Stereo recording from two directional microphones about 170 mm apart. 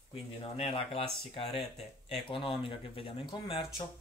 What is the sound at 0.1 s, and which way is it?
Speech, 30° left (ahead or behind).